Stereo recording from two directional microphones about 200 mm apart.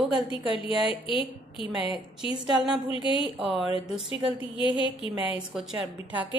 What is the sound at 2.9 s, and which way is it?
Speech, 25° left (ahead or behind).